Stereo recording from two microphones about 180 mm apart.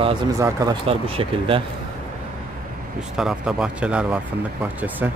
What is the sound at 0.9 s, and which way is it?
Speech, 30° right (ahead or behind).